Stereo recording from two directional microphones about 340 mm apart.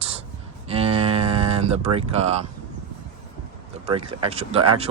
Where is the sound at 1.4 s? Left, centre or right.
Centre.